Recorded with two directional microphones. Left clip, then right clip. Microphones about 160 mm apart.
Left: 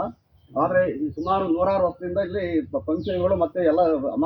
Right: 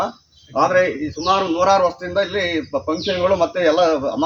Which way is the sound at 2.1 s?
10° right (ahead or behind).